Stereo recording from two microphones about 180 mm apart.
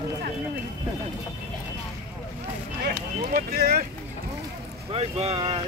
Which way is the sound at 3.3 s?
60° right (ahead or behind).